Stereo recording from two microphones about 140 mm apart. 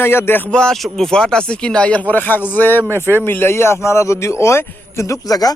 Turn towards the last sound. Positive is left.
turn(degrees=25)  # may be behind; listen again after turning